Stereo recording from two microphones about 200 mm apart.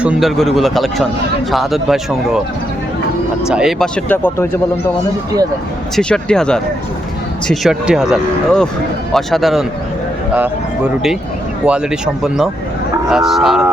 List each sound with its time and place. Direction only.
0.0 s speech: centre (ahead or behind)
3.5 s speech: centre (ahead or behind)
6.0 s speech: 5° left (ahead or behind)
11.6 s speech: 5° right (ahead or behind)